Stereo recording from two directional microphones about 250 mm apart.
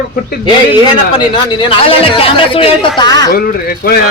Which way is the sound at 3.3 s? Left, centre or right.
Left.